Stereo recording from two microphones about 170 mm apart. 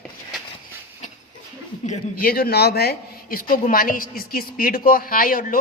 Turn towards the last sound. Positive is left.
turn(degrees=55)  # may be behind; listen again after turning